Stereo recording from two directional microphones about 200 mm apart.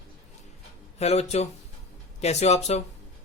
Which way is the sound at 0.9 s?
30° left (ahead or behind).